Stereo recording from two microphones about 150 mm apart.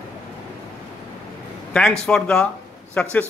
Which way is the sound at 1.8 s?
5° left (ahead or behind).